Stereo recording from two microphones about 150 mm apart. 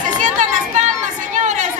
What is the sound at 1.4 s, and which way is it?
Chatter, 55° right (ahead or behind).